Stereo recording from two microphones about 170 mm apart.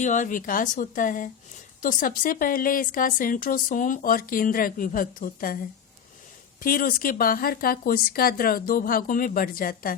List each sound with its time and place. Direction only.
0.0 s a woman's voice: 50° left (ahead or behind)
6.6 s a woman's voice: 55° left (ahead or behind)